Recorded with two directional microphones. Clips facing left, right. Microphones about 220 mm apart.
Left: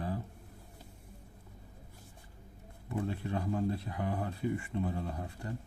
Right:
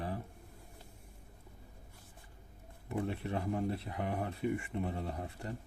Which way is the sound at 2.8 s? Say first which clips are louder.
Left 1 dB; 20° right (ahead or behind).